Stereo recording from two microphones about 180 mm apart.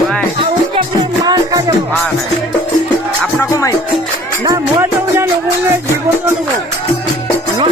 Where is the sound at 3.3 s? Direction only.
15° left (ahead or behind).